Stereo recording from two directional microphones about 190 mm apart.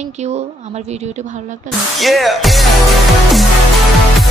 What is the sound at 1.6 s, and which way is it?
Speech, centre (ahead or behind).